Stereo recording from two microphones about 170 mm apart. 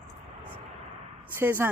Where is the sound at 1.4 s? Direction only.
10° right (ahead or behind).